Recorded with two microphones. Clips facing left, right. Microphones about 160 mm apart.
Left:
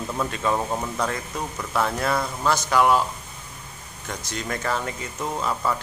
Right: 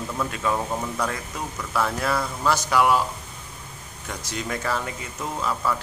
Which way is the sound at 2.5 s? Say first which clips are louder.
Left 1 dB; 10° right (ahead or behind).